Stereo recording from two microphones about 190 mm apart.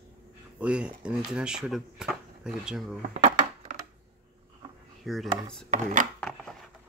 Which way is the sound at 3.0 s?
40° right (ahead or behind).